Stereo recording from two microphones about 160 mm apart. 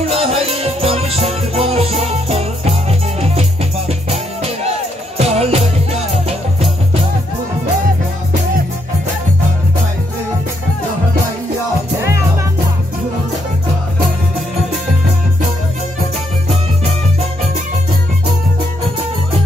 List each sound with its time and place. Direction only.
0.1 s music: 40° right (ahead or behind)
5.1 s music: 40° right (ahead or behind)